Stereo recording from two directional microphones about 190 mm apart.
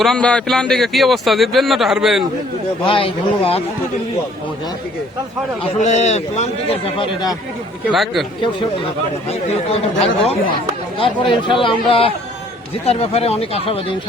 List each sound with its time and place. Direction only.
0.0 s a man's voice: 5° left (ahead or behind)
2.8 s speech: 30° left (ahead or behind)
5.8 s a man's voice: 35° left (ahead or behind)
7.9 s a man's voice: centre (ahead or behind)
9.5 s a man's voice: 30° left (ahead or behind)
10.9 s a man's voice: 25° left (ahead or behind)